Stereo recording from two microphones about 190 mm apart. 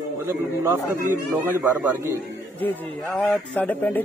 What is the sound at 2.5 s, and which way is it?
A man's voice, 5° left (ahead or behind).